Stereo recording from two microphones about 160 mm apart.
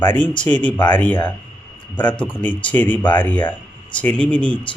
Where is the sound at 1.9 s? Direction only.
10° left (ahead or behind).